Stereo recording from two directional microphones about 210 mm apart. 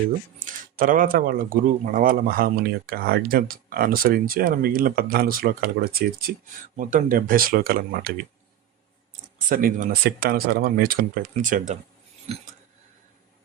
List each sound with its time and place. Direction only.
0.3 s speech: 40° right (ahead or behind)
9.5 s speech: 45° right (ahead or behind)